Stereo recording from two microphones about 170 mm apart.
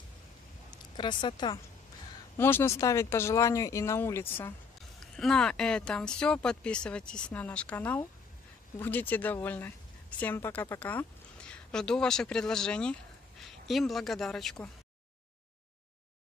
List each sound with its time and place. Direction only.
0.7 s speech: 25° left (ahead or behind)
2.3 s speech: 15° left (ahead or behind)
5.0 s speech: 5° left (ahead or behind)